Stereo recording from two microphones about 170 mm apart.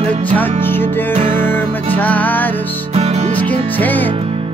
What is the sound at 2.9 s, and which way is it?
Music, 40° right (ahead or behind).